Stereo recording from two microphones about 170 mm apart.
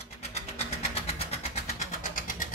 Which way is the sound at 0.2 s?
40° left (ahead or behind).